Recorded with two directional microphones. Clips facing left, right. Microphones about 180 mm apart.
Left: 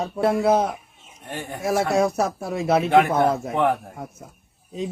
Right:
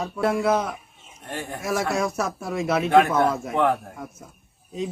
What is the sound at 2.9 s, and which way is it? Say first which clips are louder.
Speech: right 1 dB; 15° left (ahead or behind).